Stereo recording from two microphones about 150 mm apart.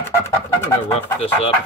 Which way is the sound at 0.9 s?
45° left (ahead or behind).